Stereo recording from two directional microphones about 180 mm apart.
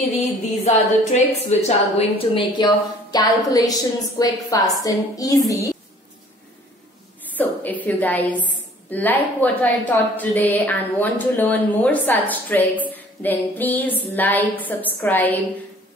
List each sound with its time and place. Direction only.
0.7 s a woman's voice: 40° left (ahead or behind); by 5.7 s 20° left (ahead or behind)
7.3 s a woman's voice: 10° left (ahead or behind)